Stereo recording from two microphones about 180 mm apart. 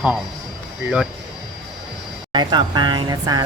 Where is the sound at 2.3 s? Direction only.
25° right (ahead or behind).